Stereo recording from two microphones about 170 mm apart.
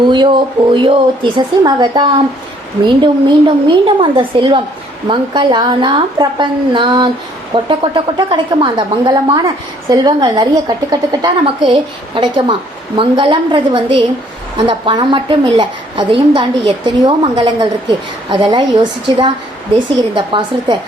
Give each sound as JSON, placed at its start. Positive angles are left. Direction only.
{"t": 0.1, "sound": "a woman's voice", "side_deg": -30}